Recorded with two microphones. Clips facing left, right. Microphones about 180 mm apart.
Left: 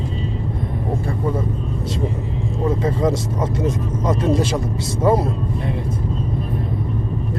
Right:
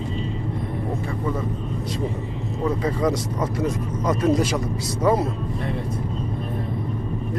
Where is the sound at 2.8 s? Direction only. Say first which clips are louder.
Left 3 dB; 25° left (ahead or behind).